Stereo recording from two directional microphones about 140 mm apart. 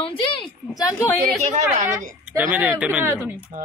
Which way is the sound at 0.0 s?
40° left (ahead or behind).